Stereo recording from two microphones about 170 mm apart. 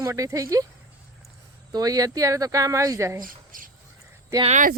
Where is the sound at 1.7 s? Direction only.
20° right (ahead or behind).